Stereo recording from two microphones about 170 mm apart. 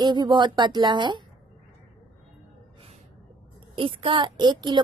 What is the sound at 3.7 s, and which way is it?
A woman's voice, 30° right (ahead or behind).